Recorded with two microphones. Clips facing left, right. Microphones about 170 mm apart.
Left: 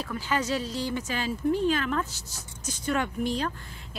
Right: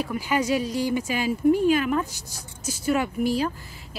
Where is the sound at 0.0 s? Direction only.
10° right (ahead or behind).